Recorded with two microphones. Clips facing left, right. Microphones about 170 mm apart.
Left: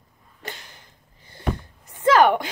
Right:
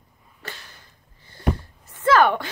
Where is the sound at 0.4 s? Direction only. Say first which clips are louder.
Left 2 dB; 15° left (ahead or behind).